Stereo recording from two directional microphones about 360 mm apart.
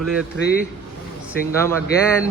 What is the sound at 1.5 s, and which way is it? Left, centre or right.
Speech, centre.